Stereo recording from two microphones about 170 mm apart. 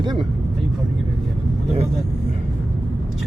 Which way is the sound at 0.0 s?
25° right (ahead or behind).